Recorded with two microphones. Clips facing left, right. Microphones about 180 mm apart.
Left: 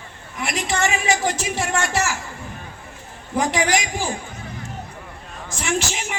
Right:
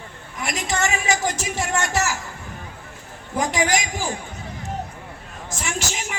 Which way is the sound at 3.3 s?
45° right (ahead or behind).